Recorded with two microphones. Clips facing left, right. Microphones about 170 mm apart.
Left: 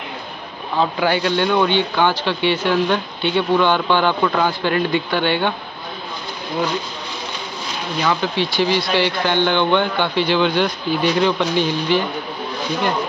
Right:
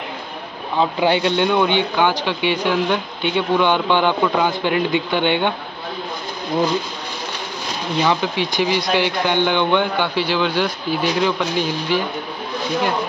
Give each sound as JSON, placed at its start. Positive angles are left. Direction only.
{"t": 0.7, "sound": "speech", "side_deg": -25}
{"t": 8.0, "sound": "speech", "side_deg": -15}